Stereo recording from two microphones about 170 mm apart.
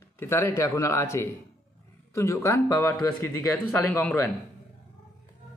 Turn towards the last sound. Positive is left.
turn(degrees=15)  # may be behind; listen again after turning